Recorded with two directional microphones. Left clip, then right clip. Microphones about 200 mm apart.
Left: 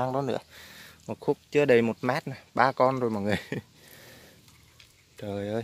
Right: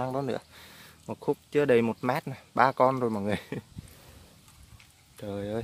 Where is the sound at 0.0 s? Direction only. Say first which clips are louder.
Left 3 dB; 10° left (ahead or behind).